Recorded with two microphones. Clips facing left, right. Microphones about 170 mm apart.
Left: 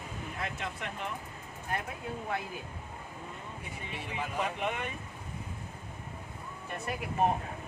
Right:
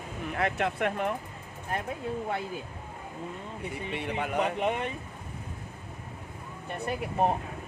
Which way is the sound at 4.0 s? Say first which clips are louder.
Right 6 dB; 65° right (ahead or behind).